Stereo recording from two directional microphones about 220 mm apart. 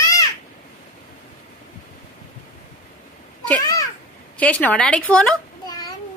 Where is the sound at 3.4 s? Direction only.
5° left (ahead or behind).